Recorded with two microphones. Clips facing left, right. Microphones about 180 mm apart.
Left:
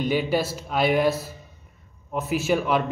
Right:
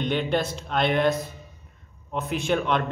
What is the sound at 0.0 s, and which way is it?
A man's voice, 5° left (ahead or behind).